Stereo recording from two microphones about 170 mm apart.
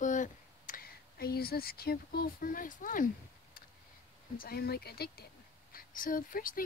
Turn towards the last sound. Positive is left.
turn(degrees=55)  # may be behind; listen again after turning